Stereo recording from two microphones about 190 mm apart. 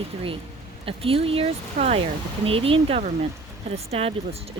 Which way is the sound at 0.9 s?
30° right (ahead or behind).